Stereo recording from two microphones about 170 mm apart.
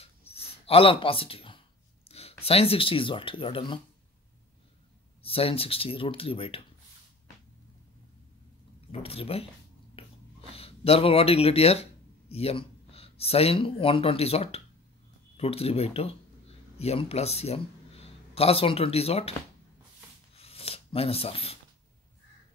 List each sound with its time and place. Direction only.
0.0 s a sound: 35° left (ahead or behind)
2.0 s speech: 35° left (ahead or behind)
5.2 s speech: 35° left (ahead or behind)
9.0 s speech: 35° left (ahead or behind)
10.0 s a sound: 35° left (ahead or behind)
10.5 s speech: 35° left (ahead or behind)
20.3 s rub: 35° left (ahead or behind)